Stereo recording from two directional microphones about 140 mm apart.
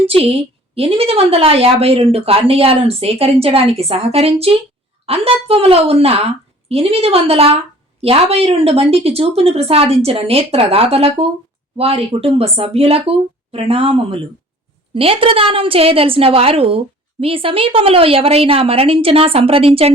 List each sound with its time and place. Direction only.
0.0 s a woman's voice: 45° right (ahead or behind)